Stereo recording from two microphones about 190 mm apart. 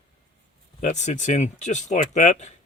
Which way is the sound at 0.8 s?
40° left (ahead or behind).